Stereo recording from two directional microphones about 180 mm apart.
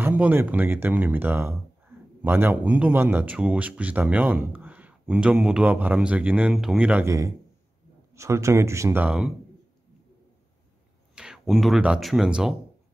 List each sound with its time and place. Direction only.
0.0 s speech: 10° right (ahead or behind)
11.1 s speech: centre (ahead or behind)